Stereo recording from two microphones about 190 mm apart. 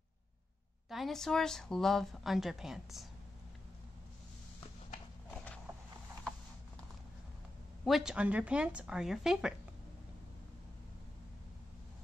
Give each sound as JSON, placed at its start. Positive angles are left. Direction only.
{"t": 0.8, "sound": "speech", "side_deg": 0}
{"t": 7.8, "sound": "speech", "side_deg": 0}